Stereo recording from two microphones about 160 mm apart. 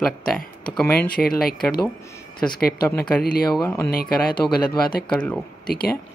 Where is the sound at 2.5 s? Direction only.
70° left (ahead or behind).